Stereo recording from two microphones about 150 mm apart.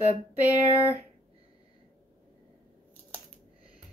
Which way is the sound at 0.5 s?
10° right (ahead or behind).